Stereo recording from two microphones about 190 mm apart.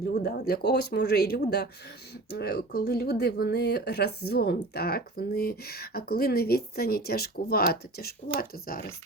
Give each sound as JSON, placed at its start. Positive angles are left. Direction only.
{"t": 0.1, "sound": "speech", "side_deg": 55}